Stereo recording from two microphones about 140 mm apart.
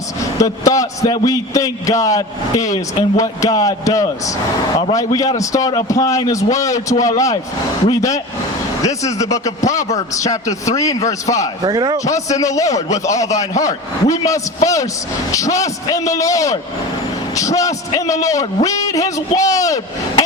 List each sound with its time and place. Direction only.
0.3 s a man's voice: 25° left (ahead or behind)
11.6 s a man's voice: 30° right (ahead or behind)
12.0 s a man's voice: 25° left (ahead or behind)